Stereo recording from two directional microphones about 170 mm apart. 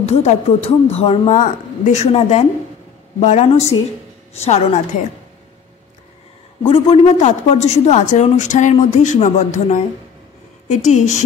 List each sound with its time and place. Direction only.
0.0 s a woman's voice: 40° left (ahead or behind)
6.6 s a woman's voice: 35° left (ahead or behind)